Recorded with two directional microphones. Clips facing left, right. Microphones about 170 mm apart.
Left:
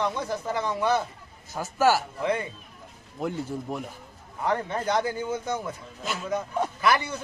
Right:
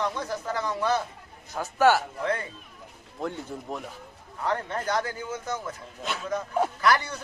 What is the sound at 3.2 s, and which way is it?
A man's voice, 5° left (ahead or behind).